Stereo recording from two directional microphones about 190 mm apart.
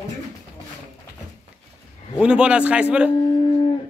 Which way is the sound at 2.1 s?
5° right (ahead or behind).